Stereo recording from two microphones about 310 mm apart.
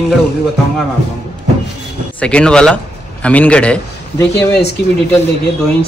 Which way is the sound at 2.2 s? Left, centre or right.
Centre.